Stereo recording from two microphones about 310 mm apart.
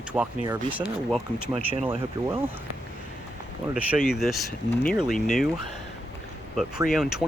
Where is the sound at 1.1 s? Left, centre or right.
Centre.